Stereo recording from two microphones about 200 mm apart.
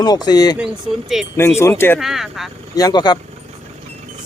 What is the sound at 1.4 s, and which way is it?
Speech, 15° left (ahead or behind).